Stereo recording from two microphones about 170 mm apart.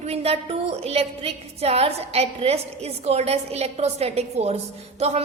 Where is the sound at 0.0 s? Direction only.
35° right (ahead or behind).